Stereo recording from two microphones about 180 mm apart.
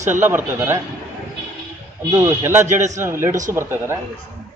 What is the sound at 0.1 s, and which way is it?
Speech, 10° right (ahead or behind).